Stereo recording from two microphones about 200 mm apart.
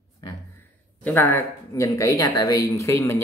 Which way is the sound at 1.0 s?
10° left (ahead or behind).